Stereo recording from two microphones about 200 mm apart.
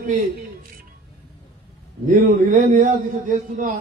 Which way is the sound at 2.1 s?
40° right (ahead or behind).